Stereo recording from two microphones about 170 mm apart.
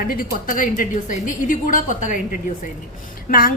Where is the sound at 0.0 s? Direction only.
55° left (ahead or behind).